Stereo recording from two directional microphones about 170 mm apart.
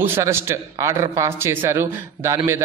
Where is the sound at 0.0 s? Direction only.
15° right (ahead or behind).